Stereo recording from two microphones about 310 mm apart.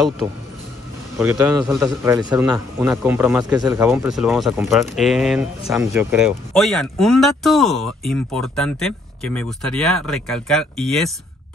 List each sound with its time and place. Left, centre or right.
1.2 s speech: centre